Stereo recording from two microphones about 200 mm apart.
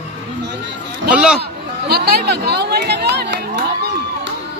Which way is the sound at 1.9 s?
55° right (ahead or behind).